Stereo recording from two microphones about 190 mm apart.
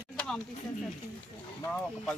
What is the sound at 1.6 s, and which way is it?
Speech, 5° left (ahead or behind).